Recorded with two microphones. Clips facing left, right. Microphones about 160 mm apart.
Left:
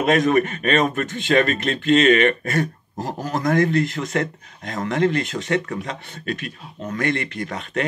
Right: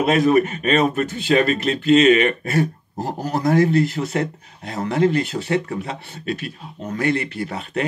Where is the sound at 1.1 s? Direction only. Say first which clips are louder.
Left 1 dB; 35° right (ahead or behind).